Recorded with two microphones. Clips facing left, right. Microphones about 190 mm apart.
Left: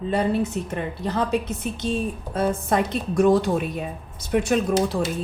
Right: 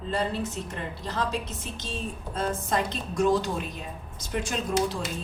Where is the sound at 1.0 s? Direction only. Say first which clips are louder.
Left 7 dB; 60° left (ahead or behind).